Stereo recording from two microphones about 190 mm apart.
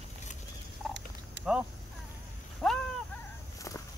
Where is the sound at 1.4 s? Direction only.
65° right (ahead or behind).